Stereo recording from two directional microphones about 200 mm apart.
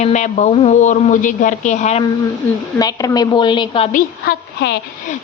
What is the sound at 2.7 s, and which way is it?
A woman's voice, 20° left (ahead or behind).